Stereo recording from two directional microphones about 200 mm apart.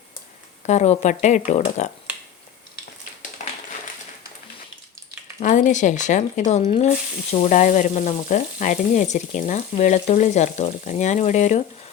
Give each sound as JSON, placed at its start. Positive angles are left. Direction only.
{"t": 0.7, "sound": "frying", "side_deg": 35}
{"t": 5.4, "sound": "frying", "side_deg": 40}